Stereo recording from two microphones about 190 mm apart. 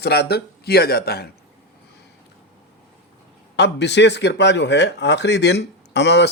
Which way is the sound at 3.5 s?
65° left (ahead or behind).